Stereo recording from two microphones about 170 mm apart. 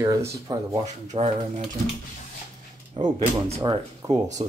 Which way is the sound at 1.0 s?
40° right (ahead or behind).